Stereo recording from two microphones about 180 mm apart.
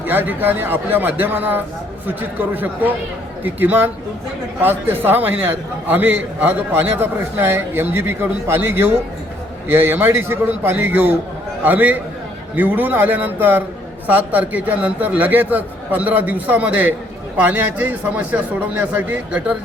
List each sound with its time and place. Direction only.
0.0 s a man's voice: 10° right (ahead or behind)